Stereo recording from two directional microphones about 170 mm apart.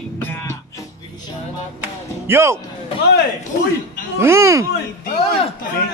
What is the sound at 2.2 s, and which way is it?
Speech, 15° right (ahead or behind).